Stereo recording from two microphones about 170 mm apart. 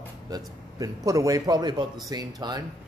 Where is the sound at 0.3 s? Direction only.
20° right (ahead or behind).